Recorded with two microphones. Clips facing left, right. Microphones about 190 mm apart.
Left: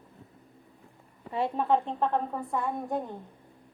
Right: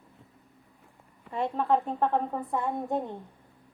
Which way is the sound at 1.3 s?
5° left (ahead or behind).